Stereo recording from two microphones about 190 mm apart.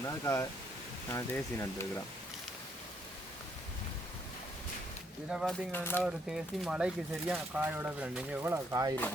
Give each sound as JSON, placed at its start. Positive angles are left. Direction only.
{"t": 0.0, "sound": "speech", "side_deg": 15}
{"t": 5.3, "sound": "speech", "side_deg": 0}
{"t": 5.7, "sound": "speech", "side_deg": 10}
{"t": 6.0, "sound": "speech", "side_deg": -5}